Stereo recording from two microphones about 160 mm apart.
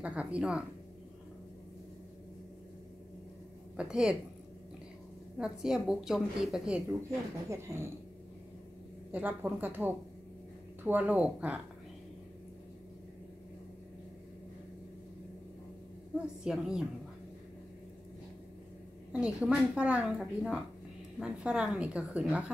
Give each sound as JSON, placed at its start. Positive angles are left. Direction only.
{"t": 0.0, "sound": "a woman's voice", "side_deg": -10}
{"t": 3.7, "sound": "a woman's voice", "side_deg": -5}
{"t": 5.4, "sound": "a woman's voice", "side_deg": 0}
{"t": 7.4, "sound": "a woman's voice", "side_deg": -20}
{"t": 9.1, "sound": "a woman's voice", "side_deg": -10}
{"t": 16.4, "sound": "a woman's voice", "side_deg": -5}
{"t": 19.1, "sound": "a woman's voice", "side_deg": -5}